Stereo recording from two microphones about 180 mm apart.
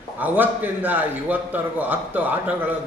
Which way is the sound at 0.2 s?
10° right (ahead or behind).